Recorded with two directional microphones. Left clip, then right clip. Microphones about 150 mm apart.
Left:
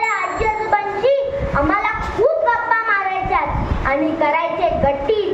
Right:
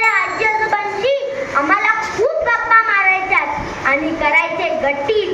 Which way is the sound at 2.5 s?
35° left (ahead or behind).